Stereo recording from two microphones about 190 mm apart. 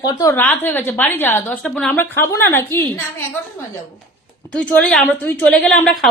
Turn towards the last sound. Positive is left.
turn(degrees=5)  # may be behind; listen again after turning